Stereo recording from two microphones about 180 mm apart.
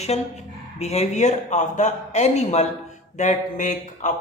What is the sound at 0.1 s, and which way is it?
A man's voice, 35° left (ahead or behind).